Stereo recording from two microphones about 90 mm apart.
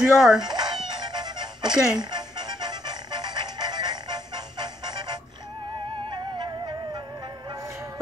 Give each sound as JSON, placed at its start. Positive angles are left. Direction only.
{"t": 0.0, "sound": "speech", "side_deg": -5}
{"t": 0.4, "sound": "music", "side_deg": -50}
{"t": 1.7, "sound": "speech", "side_deg": -10}
{"t": 2.0, "sound": "music", "side_deg": -50}